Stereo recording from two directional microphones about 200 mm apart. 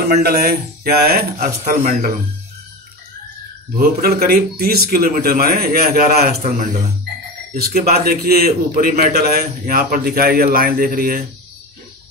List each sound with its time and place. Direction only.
0.1 s a man's voice: 50° right (ahead or behind)
1.6 s a man's voice: 35° right (ahead or behind)
3.7 s a man's voice: 50° right (ahead or behind)
6.4 s a man's voice: 40° right (ahead or behind)